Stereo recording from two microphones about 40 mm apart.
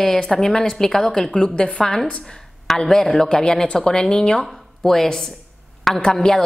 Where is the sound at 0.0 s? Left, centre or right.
Left.